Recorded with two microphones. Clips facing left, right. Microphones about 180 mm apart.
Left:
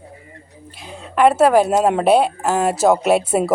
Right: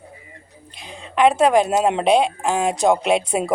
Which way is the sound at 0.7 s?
5° left (ahead or behind).